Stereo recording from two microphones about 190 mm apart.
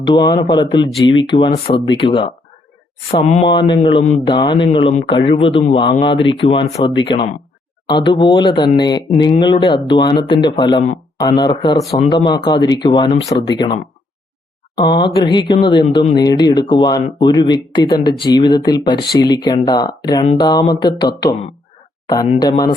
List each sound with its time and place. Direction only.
0.1 s a man's voice: 20° left (ahead or behind)
3.5 s a man's voice: 25° left (ahead or behind)
14.8 s speech: 25° left (ahead or behind)
22.4 s speech: 20° left (ahead or behind)